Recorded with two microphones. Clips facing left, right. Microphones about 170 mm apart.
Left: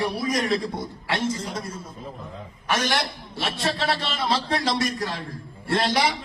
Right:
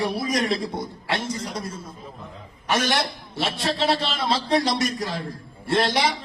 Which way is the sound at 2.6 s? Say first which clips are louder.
Right 2 dB; 25° right (ahead or behind).